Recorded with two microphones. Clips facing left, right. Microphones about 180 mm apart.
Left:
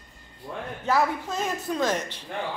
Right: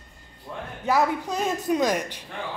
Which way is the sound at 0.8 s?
15° right (ahead or behind).